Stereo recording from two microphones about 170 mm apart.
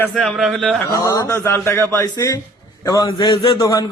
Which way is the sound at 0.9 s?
20° left (ahead or behind).